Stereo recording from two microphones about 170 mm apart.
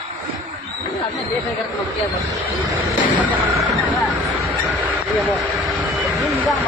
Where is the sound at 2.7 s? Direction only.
10° right (ahead or behind).